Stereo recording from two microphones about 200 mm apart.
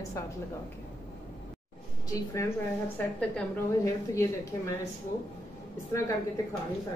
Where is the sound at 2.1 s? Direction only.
15° left (ahead or behind).